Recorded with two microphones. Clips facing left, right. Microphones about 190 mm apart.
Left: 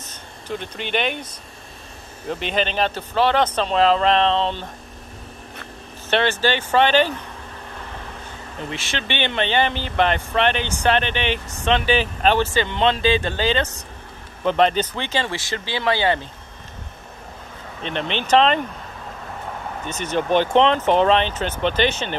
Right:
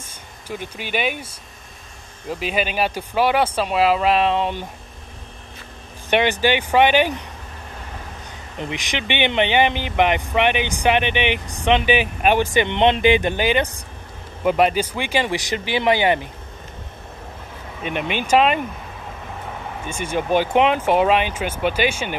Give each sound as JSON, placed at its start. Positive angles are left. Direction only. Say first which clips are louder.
{"t": 0.0, "sound": "speech", "louder": "left 2 dB", "side_deg": -10}
{"t": 6.0, "sound": "speech", "louder": "right 2 dB", "side_deg": -15}
{"t": 8.5, "sound": "speech", "louder": "right 2 dB", "side_deg": -15}
{"t": 17.8, "sound": "speech", "louder": "right 1 dB", "side_deg": -10}
{"t": 19.9, "sound": "speech", "louder": "even", "side_deg": -10}